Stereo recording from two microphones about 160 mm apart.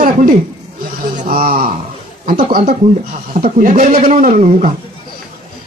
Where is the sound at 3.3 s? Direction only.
60° right (ahead or behind).